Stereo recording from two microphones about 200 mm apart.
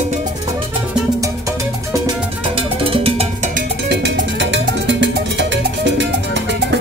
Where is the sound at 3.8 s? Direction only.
60° right (ahead or behind).